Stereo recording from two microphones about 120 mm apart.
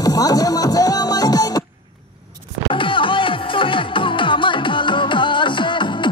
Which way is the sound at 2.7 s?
45° left (ahead or behind).